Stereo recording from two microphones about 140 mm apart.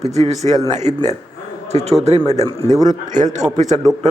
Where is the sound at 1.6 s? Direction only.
50° right (ahead or behind).